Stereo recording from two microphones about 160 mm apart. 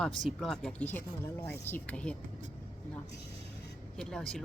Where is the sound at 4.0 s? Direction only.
5° left (ahead or behind).